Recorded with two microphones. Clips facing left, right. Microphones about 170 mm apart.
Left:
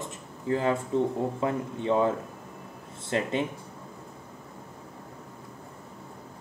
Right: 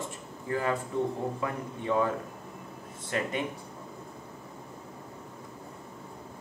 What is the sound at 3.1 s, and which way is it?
Speech, 25° left (ahead or behind).